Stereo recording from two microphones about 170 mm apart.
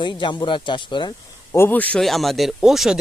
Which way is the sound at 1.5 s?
10° left (ahead or behind).